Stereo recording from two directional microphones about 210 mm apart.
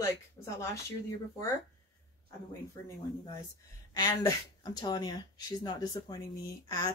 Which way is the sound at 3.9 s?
20° left (ahead or behind).